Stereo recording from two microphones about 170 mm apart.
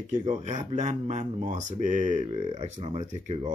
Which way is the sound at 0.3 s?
45° right (ahead or behind).